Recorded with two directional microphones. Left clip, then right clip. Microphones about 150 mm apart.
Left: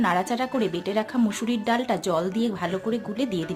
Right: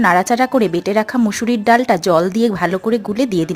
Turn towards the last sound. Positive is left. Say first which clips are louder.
# right 10 dB
turn(degrees=-45)  # may be behind; listen again after turning